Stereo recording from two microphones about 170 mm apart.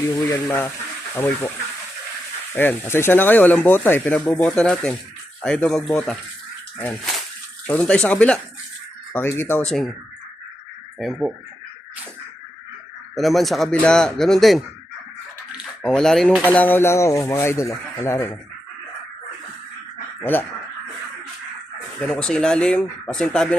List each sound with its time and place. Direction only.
0.1 s speech: 20° left (ahead or behind); by 9.9 s 5° left (ahead or behind)
11.0 s speech: centre (ahead or behind)
13.1 s speech: centre (ahead or behind)
15.8 s speech: 5° left (ahead or behind)
20.3 s speech: 10° left (ahead or behind)
22.0 s speech: 5° left (ahead or behind)